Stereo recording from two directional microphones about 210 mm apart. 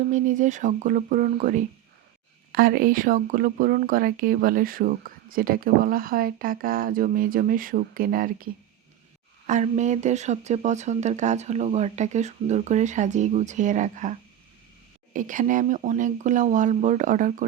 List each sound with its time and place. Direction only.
0.0 s speech: 35° right (ahead or behind)
9.5 s speech: 35° right (ahead or behind)